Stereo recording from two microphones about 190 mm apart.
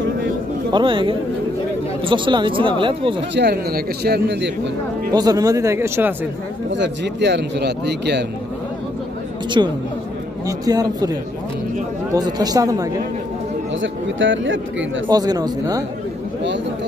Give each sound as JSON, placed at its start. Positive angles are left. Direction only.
{"t": 0.7, "sound": "speech", "side_deg": -25}
{"t": 3.2, "sound": "speech", "side_deg": -60}
{"t": 5.1, "sound": "speech", "side_deg": -20}
{"t": 6.7, "sound": "speech", "side_deg": -70}
{"t": 9.6, "sound": "speech", "side_deg": -20}
{"t": 13.7, "sound": "speech", "side_deg": -80}
{"t": 15.0, "sound": "speech", "side_deg": -20}